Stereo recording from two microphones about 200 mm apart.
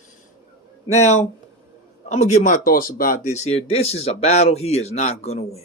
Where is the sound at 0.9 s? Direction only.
35° left (ahead or behind).